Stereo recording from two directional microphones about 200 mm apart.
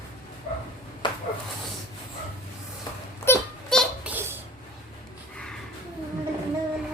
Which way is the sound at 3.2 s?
10° left (ahead or behind).